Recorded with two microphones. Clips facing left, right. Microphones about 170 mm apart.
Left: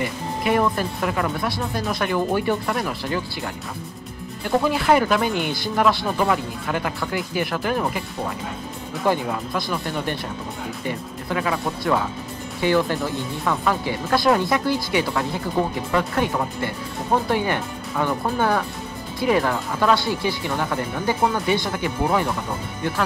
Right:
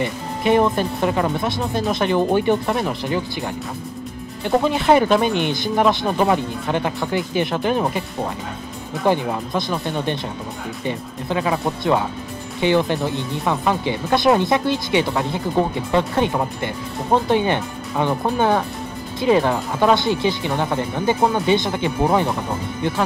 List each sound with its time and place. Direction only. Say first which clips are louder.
0.0 s speech: right 3 dB; 25° right (ahead or behind)
4.5 s speech: right 2 dB; 20° right (ahead or behind)
9.0 s speech: right 3 dB; 20° right (ahead or behind)